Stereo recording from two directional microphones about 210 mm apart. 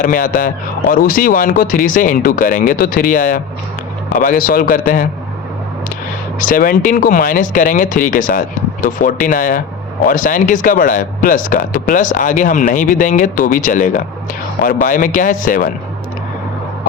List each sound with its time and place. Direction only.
0.1 s speech: 40° left (ahead or behind)
6.4 s speech: 40° left (ahead or behind)